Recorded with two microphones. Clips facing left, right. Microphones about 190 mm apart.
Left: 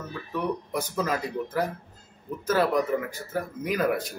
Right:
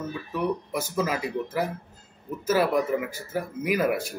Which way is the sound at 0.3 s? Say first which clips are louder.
Right 1 dB; 5° right (ahead or behind).